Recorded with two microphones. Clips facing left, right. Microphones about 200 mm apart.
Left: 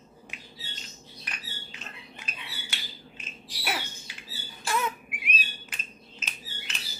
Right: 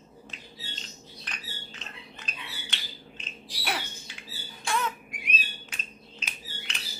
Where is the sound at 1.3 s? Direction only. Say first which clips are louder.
Even; 10° left (ahead or behind).